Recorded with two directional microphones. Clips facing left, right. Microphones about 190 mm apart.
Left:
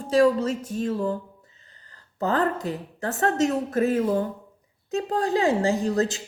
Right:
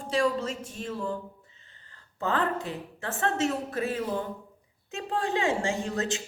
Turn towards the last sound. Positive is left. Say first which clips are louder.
# left 6 dB
turn(degrees=35)  # may be behind; listen again after turning